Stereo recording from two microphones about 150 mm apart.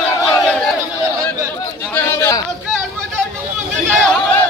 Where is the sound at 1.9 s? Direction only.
15° left (ahead or behind).